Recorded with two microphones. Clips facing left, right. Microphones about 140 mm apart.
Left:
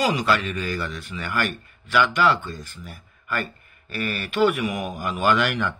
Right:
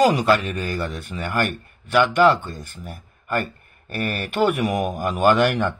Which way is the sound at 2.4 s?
55° right (ahead or behind).